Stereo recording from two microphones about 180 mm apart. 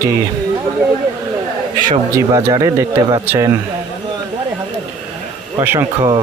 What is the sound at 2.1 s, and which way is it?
Speech, 20° right (ahead or behind).